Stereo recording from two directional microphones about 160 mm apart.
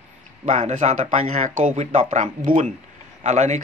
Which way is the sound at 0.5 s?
50° right (ahead or behind).